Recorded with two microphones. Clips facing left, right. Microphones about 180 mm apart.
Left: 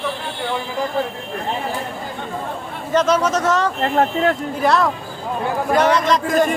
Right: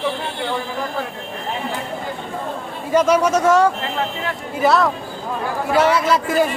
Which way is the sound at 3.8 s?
50° left (ahead or behind).